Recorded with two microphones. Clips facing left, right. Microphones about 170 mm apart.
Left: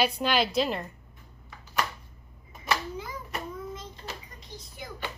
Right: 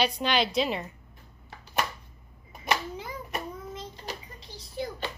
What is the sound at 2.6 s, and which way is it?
Hands, 25° right (ahead or behind).